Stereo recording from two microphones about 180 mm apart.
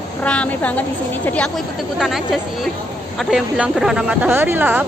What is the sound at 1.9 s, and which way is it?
A woman's voice, centre (ahead or behind).